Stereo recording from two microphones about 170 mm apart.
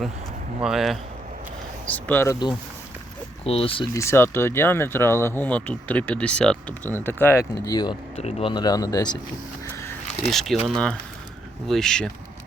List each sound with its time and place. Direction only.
0.6 s speech: centre (ahead or behind)
1.9 s speech: 10° left (ahead or behind)
3.4 s speech: 35° left (ahead or behind)
3.9 s speech: 15° left (ahead or behind)
10.2 s speech: centre (ahead or behind)